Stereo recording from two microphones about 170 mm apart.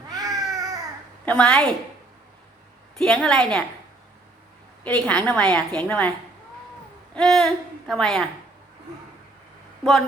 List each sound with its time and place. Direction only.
0.1 s babbling: 20° right (ahead or behind)
1.2 s a woman's voice: 5° left (ahead or behind)
3.0 s a woman's voice: 5° left (ahead or behind)
4.8 s a woman's voice: 10° left (ahead or behind)
7.1 s speech: 5° left (ahead or behind)